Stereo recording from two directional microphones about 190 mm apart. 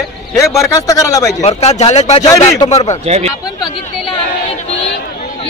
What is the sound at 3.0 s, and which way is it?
Speech, 35° right (ahead or behind).